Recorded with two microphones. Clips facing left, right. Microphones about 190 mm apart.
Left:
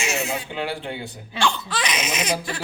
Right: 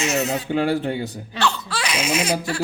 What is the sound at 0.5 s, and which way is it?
Speech, 45° right (ahead or behind).